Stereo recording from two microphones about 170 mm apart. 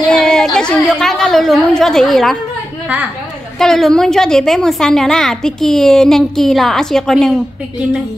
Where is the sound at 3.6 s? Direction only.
Centre (ahead or behind).